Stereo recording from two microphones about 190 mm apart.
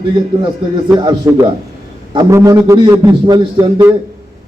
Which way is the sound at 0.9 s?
20° right (ahead or behind).